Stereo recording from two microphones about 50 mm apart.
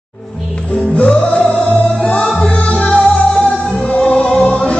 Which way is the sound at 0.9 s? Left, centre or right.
Left.